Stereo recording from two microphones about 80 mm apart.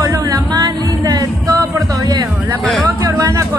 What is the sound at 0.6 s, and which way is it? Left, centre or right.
Music, right.